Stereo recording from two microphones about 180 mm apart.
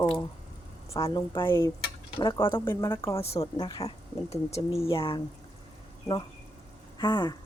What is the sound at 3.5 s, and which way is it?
A woman's voice, 30° left (ahead or behind).